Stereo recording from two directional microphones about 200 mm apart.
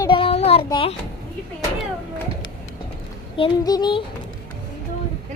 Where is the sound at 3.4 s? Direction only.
20° left (ahead or behind).